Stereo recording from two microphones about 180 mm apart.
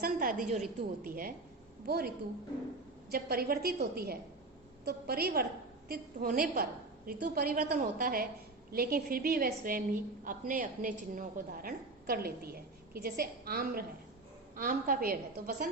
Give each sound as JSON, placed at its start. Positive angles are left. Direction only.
{"t": 0.0, "sound": "a woman's voice", "side_deg": -50}